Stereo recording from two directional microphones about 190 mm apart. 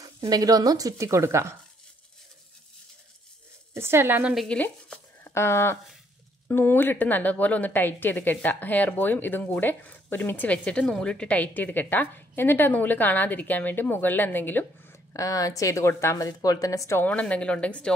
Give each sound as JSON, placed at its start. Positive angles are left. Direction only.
{"t": 0.0, "sound": "speech", "side_deg": -20}
{"t": 3.7, "sound": "a woman's voice", "side_deg": -15}